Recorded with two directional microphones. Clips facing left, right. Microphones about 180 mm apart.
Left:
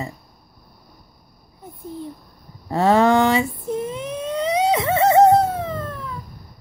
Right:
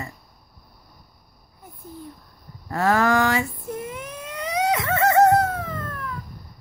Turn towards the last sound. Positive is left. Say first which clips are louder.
# left 4 dB
turn(degrees=25)  # may be behind; listen again after turning